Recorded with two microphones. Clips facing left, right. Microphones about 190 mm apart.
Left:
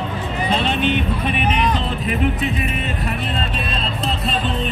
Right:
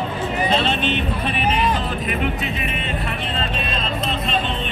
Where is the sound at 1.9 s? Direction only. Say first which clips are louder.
Left 2 dB; 35° left (ahead or behind).